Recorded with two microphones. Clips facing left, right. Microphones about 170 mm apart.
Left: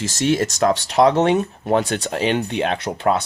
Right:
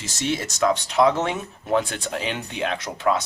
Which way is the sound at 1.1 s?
65° left (ahead or behind).